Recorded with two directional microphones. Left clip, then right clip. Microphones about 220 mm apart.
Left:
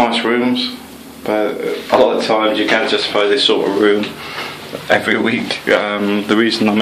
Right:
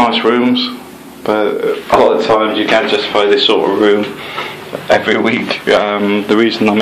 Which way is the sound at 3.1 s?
15° left (ahead or behind).